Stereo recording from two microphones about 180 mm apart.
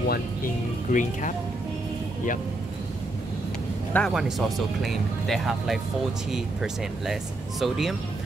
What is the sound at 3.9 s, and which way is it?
Speech, centre (ahead or behind).